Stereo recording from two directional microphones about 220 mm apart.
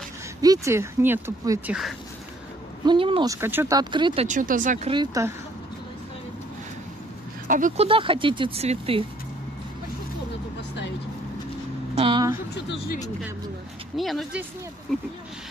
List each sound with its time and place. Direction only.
0.4 s speech: 15° right (ahead or behind)
2.8 s speech: 20° right (ahead or behind)
7.4 s speech: 35° right (ahead or behind)
12.0 s vehicle: 25° right (ahead or behind)
12.5 s speech: 45° left (ahead or behind)
13.9 s speech: centre (ahead or behind)